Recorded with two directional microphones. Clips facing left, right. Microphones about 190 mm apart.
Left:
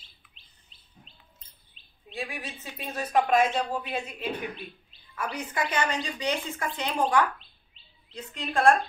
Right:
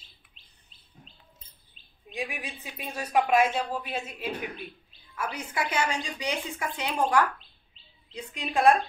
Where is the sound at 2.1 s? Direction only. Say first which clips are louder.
Right 1 dB; 15° right (ahead or behind).